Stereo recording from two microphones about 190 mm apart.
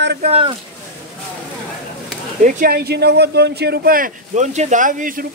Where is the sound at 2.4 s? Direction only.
45° right (ahead or behind).